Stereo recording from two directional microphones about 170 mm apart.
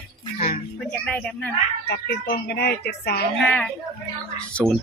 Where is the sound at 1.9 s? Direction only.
70° left (ahead or behind).